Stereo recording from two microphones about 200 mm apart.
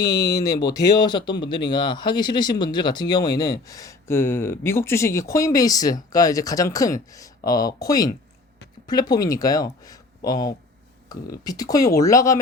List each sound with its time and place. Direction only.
0.0 s speech: 20° left (ahead or behind)
11.1 s speech: 20° left (ahead or behind)